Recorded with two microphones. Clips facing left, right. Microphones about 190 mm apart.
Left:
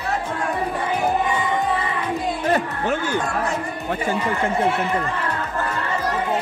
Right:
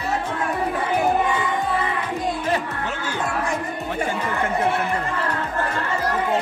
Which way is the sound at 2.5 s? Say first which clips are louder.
Left 4 dB; 50° left (ahead or behind).